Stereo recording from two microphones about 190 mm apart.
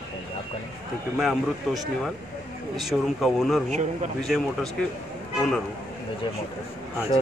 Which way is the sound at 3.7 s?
35° right (ahead or behind).